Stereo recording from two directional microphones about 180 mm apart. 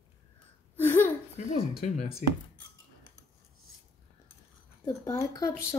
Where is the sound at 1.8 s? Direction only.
40° left (ahead or behind).